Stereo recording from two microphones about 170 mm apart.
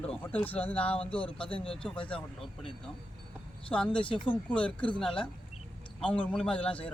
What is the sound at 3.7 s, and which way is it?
Speech, 5° left (ahead or behind).